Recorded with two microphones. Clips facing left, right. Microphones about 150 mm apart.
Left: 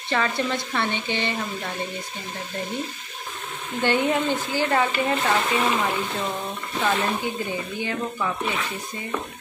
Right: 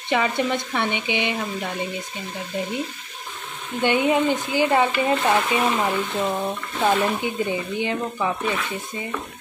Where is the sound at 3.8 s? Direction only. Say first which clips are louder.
Right 3 dB; 15° right (ahead or behind).